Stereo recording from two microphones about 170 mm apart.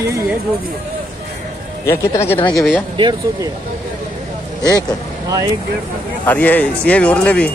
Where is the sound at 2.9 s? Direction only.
30° right (ahead or behind).